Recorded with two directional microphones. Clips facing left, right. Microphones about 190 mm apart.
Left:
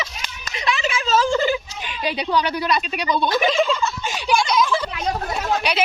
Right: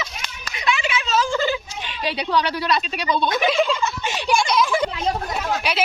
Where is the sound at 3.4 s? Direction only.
Centre (ahead or behind).